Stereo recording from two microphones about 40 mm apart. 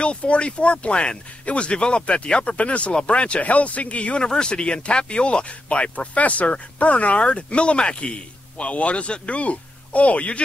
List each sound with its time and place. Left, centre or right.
0.0 s speech: left